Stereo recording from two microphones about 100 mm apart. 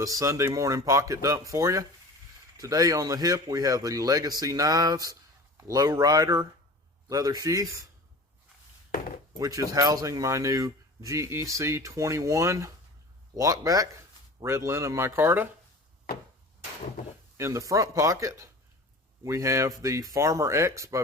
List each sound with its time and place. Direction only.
0.0 s speech: 35° right (ahead or behind)
9.4 s speech: 35° right (ahead or behind)
17.3 s speech: 30° right (ahead or behind)